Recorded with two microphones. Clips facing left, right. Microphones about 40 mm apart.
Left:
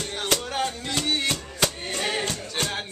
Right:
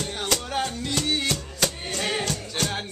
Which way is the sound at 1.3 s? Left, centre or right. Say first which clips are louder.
Even; centre.